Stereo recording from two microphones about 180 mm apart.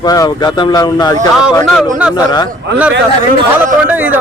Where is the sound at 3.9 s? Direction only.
10° right (ahead or behind).